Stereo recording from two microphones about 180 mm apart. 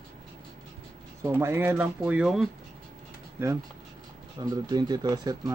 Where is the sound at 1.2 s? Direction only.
15° right (ahead or behind).